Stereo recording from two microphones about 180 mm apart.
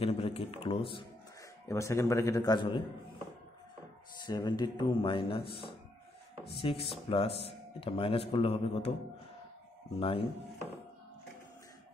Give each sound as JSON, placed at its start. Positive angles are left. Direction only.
{"t": 0.0, "sound": "speech", "side_deg": 35}
{"t": 1.7, "sound": "a man's voice", "side_deg": 15}
{"t": 4.3, "sound": "speech", "side_deg": 20}
{"t": 6.6, "sound": "speech", "side_deg": 30}
{"t": 9.9, "sound": "speech", "side_deg": 30}